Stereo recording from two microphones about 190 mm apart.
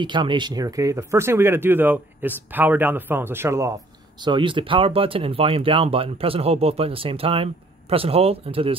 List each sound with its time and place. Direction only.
0.0 s speech: 25° right (ahead or behind)
4.2 s speech: 25° right (ahead or behind)